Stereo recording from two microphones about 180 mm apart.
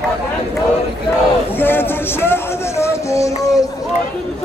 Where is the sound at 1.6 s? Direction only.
10° left (ahead or behind).